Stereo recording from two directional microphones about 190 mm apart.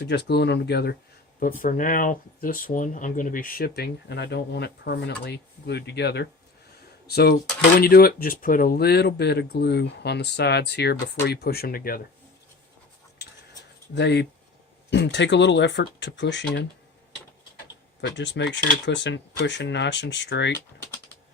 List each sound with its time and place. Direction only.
0.0 s speech: 60° left (ahead or behind)
13.9 s speech: 60° left (ahead or behind)
18.0 s speech: 65° left (ahead or behind)